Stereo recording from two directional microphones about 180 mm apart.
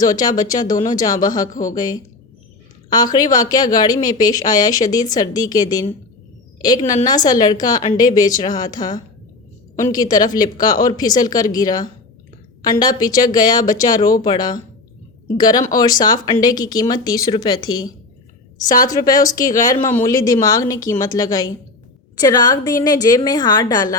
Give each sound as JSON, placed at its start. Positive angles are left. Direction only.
{"t": 0.0, "sound": "speech", "side_deg": 20}
{"t": 19.0, "sound": "speech", "side_deg": 20}